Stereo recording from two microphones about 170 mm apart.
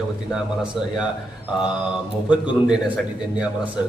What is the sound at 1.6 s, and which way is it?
Speech, 5° right (ahead or behind).